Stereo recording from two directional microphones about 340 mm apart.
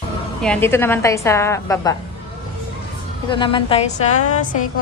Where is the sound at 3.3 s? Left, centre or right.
Centre.